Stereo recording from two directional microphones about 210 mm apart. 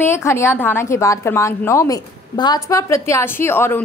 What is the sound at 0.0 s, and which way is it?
A woman's voice, 10° left (ahead or behind).